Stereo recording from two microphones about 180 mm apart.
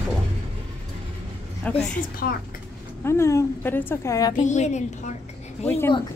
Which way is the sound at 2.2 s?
60° left (ahead or behind).